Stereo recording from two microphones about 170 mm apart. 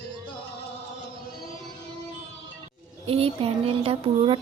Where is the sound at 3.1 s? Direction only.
35° right (ahead or behind).